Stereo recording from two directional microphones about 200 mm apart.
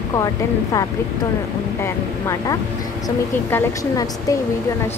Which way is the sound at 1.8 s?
15° left (ahead or behind).